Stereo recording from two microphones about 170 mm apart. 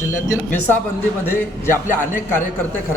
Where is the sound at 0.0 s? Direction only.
15° left (ahead or behind).